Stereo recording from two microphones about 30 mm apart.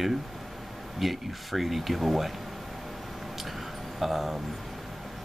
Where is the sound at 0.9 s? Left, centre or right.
Centre.